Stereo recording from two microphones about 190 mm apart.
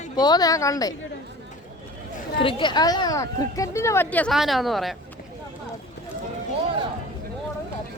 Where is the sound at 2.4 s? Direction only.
25° left (ahead or behind); by 4.9 s centre (ahead or behind).